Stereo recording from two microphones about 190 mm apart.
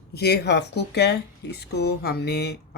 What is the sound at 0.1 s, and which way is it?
Speech, 55° left (ahead or behind).